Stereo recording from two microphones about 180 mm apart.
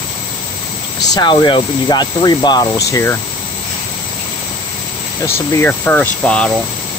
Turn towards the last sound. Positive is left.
turn(degrees=5)  # may be behind; listen again after turning